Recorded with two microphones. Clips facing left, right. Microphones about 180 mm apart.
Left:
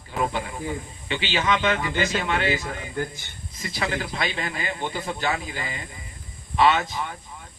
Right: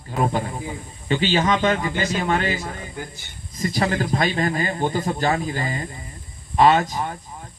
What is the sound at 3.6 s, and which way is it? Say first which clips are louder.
Speech: right 6 dB; 40° right (ahead or behind).